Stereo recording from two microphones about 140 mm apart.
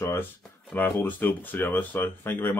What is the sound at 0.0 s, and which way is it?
Speech, 15° left (ahead or behind).